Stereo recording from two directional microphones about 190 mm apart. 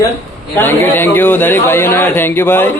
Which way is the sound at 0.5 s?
10° left (ahead or behind).